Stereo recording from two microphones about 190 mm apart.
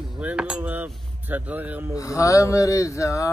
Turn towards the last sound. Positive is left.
turn(degrees=15)  # may be behind; listen again after turning